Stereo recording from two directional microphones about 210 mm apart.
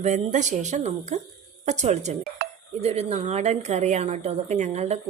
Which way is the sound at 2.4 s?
45° right (ahead or behind).